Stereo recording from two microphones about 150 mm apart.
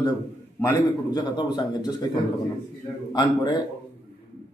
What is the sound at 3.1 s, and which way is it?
Speech, 25° left (ahead or behind).